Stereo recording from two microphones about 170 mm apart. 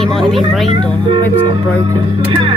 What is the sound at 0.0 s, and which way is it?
Speech, centre (ahead or behind).